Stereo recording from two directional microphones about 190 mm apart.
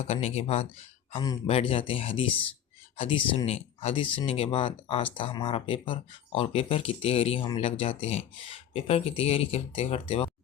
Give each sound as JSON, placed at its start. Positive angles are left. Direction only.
{"t": 0.0, "sound": "speech", "side_deg": 35}